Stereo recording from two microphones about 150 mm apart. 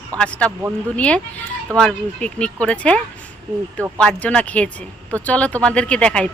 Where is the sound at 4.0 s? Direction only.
5° left (ahead or behind).